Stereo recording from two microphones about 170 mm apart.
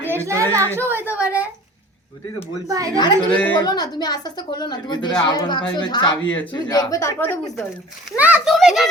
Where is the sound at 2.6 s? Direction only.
20° right (ahead or behind).